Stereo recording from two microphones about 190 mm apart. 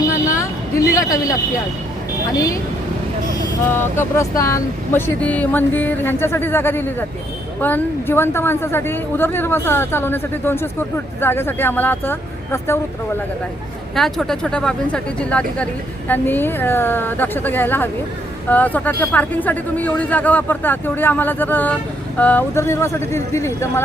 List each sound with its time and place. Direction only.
0.3 s a sound: 15° left (ahead or behind)
2.3 s a woman's voice: 15° left (ahead or behind)
3.7 s a woman's voice: 10° left (ahead or behind)
13.9 s a woman's voice: centre (ahead or behind)